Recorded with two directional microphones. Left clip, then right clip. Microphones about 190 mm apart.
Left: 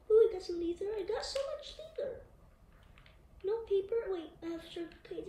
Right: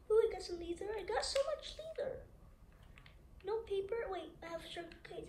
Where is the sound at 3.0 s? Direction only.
45° right (ahead or behind).